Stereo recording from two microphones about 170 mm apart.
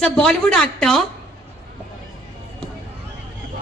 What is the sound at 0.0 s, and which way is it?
Speech, 5° left (ahead or behind).